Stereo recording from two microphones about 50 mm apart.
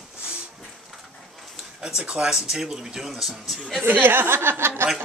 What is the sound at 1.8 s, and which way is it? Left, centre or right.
Speech, centre.